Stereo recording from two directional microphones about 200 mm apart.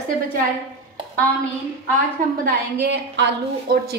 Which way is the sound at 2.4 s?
55° right (ahead or behind).